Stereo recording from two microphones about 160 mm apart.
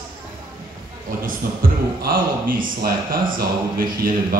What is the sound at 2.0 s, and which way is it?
Speech, 65° right (ahead or behind).